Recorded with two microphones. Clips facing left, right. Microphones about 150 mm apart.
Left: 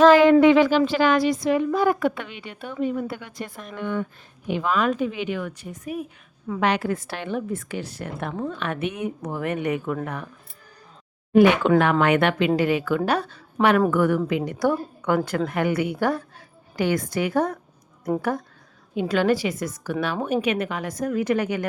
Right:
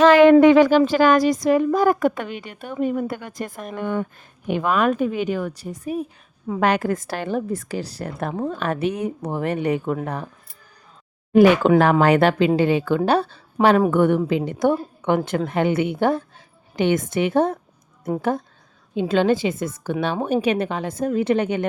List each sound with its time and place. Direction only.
0.1 s speech: 60° right (ahead or behind); by 6.1 s 30° right (ahead or behind)
6.6 s a woman's voice: 45° right (ahead or behind)
11.3 s a woman's voice: 40° right (ahead or behind)
18.9 s a woman's voice: 25° right (ahead or behind)